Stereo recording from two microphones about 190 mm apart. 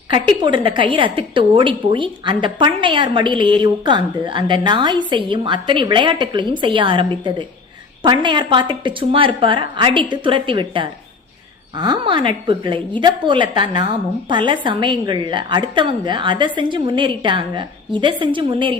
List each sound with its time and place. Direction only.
0.1 s a woman's voice: 25° right (ahead or behind)